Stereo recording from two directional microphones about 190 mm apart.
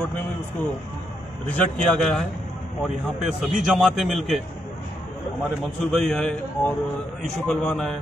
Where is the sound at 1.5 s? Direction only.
5° left (ahead or behind).